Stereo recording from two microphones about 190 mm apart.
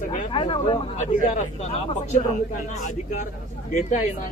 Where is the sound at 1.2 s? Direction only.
40° left (ahead or behind).